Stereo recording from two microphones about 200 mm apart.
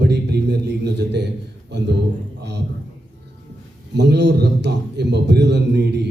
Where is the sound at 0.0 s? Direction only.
55° right (ahead or behind).